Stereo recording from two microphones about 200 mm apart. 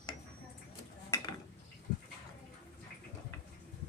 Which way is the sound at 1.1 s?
15° left (ahead or behind).